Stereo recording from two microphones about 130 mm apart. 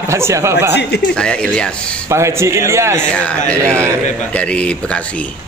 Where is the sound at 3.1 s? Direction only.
10° left (ahead or behind).